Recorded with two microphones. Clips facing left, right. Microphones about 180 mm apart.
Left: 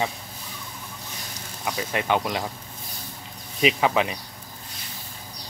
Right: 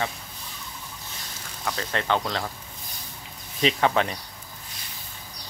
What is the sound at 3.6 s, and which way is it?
Speech, 10° left (ahead or behind).